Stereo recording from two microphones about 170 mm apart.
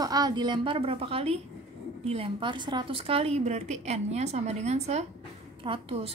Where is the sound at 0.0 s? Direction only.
20° right (ahead or behind).